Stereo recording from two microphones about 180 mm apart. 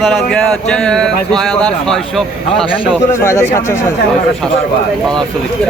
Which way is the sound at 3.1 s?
15° left (ahead or behind).